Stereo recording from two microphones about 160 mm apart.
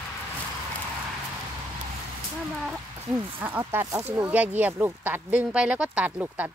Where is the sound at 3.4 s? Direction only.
10° right (ahead or behind).